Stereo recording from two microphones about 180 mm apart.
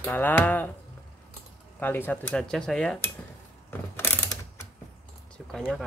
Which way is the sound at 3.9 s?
15° left (ahead or behind).